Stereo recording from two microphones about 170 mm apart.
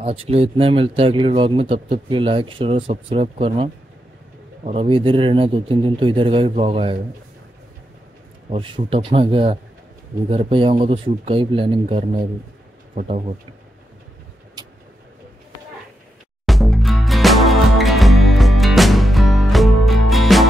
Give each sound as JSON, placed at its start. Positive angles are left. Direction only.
{"t": 0.0, "sound": "speech", "side_deg": -35}
{"t": 8.5, "sound": "speech", "side_deg": -30}
{"t": 16.4, "sound": "music", "side_deg": 0}